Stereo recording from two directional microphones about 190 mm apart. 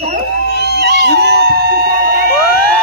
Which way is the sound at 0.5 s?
60° right (ahead or behind).